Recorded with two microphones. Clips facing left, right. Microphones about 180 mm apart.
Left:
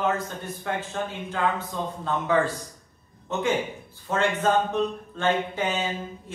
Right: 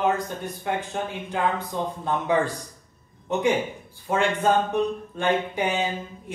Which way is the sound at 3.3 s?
15° right (ahead or behind).